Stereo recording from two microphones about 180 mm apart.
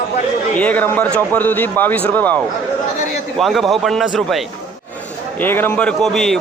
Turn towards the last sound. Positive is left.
turn(degrees=0)  # may be behind; listen again after turning